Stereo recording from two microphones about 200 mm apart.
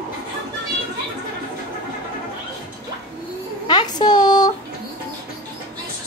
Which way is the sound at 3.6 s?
25° left (ahead or behind).